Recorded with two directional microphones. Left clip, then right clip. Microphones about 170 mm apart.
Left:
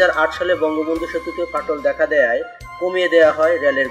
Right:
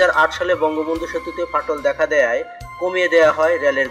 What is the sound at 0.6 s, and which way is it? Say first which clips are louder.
Speech: even; centre (ahead or behind).